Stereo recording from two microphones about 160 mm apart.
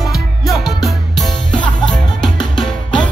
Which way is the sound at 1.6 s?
30° left (ahead or behind).